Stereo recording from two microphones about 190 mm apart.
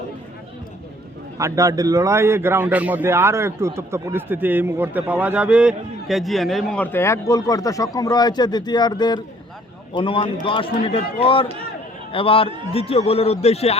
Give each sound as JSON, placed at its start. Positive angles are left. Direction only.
{"t": 1.4, "sound": "a man's voice", "side_deg": -15}